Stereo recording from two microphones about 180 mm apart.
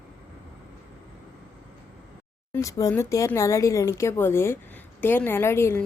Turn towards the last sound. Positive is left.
turn(degrees=15)  # may be behind; listen again after turning